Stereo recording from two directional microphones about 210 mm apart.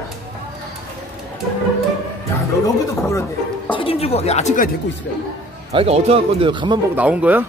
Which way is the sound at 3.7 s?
25° left (ahead or behind).